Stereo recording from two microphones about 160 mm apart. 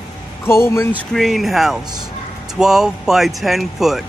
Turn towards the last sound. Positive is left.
turn(degrees=0)  # may be behind; listen again after turning